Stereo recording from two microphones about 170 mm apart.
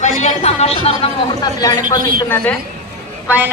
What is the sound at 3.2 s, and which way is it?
Speech, 10° right (ahead or behind).